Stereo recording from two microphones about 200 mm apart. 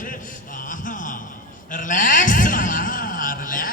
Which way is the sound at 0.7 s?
40° left (ahead or behind).